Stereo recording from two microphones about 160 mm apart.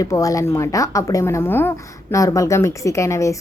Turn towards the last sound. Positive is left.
turn(degrees=20)  # may be behind; listen again after turning